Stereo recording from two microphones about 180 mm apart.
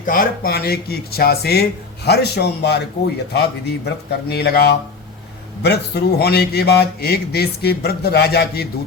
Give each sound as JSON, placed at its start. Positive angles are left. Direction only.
{"t": 0.0, "sound": "a man's voice", "side_deg": 50}